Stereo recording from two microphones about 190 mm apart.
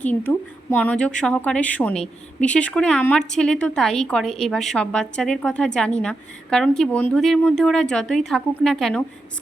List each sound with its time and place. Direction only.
0.0 s a woman's voice: 10° left (ahead or behind)